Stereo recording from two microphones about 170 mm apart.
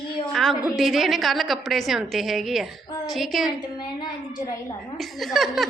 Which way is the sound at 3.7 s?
25° left (ahead or behind).